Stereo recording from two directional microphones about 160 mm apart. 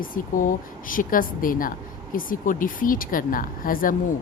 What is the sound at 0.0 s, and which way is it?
Speech, 60° left (ahead or behind).